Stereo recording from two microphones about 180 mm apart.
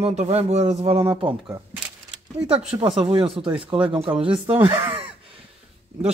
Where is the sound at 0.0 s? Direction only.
40° right (ahead or behind).